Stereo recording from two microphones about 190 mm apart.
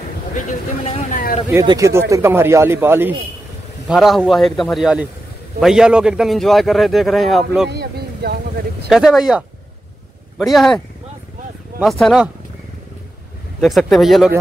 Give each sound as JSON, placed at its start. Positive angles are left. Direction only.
{"t": 1.1, "sound": "speech", "side_deg": 45}
{"t": 1.5, "sound": "speech", "side_deg": -20}
{"t": 3.9, "sound": "a man's voice", "side_deg": 0}
{"t": 7.7, "sound": "speech", "side_deg": -60}
{"t": 8.9, "sound": "a man's voice", "side_deg": 0}
{"t": 11.8, "sound": "a man's voice", "side_deg": 0}
{"t": 13.6, "sound": "a man's voice", "side_deg": 0}